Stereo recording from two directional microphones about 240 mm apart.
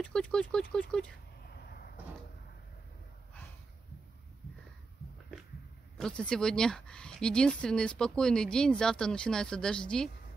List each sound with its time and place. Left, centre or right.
0.0 s speech: centre
1.4 s a sound: left
5.9 s speech: centre